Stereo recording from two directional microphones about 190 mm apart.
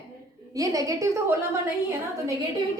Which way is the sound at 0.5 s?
20° right (ahead or behind).